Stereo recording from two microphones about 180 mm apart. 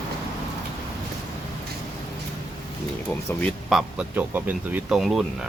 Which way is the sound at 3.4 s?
Centre (ahead or behind).